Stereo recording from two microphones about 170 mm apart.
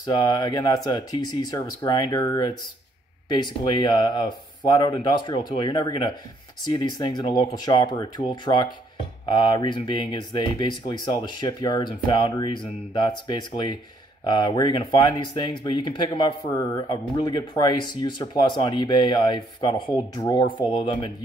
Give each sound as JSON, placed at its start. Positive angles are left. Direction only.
{"t": 0.0, "sound": "speech", "side_deg": 25}